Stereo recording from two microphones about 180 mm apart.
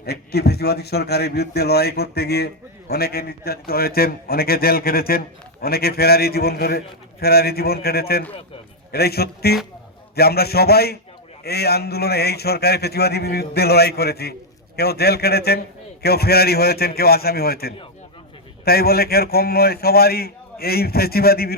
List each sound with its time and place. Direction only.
0.0 s a man's voice: 65° left (ahead or behind)